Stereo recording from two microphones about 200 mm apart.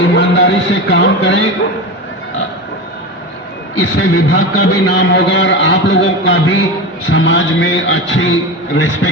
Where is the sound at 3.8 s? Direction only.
75° left (ahead or behind).